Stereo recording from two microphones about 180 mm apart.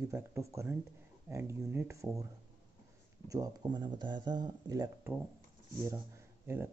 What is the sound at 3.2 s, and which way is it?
Speech, 20° right (ahead or behind).